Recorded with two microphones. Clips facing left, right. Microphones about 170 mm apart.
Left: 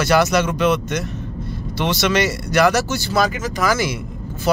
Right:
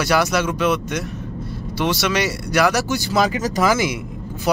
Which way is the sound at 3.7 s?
20° right (ahead or behind).